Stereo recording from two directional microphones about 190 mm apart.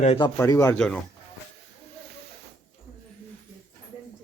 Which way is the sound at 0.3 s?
15° left (ahead or behind).